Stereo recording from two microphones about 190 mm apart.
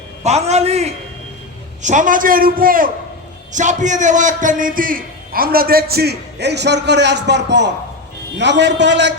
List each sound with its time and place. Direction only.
0.3 s a man's voice: 35° right (ahead or behind); by 9.1 s 70° right (ahead or behind)